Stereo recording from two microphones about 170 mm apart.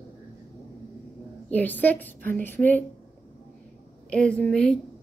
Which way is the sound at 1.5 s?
10° left (ahead or behind).